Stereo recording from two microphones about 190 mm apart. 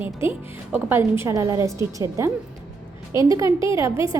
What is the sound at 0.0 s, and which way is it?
A woman's voice, 10° right (ahead or behind).